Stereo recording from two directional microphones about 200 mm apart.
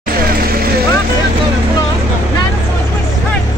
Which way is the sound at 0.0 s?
45° right (ahead or behind).